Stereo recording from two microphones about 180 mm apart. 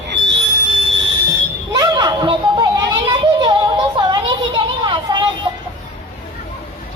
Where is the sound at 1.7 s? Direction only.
25° right (ahead or behind).